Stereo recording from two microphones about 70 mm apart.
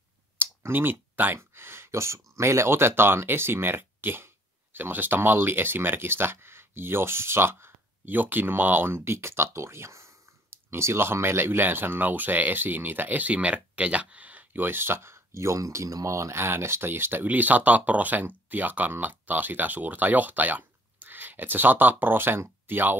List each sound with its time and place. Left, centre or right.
0.4 s clicking: right
1.4 s speech: right